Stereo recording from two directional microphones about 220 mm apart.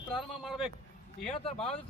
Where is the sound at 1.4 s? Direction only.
25° left (ahead or behind).